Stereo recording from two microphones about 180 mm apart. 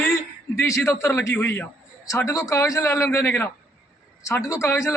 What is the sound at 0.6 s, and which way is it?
A woman's voice, 15° left (ahead or behind).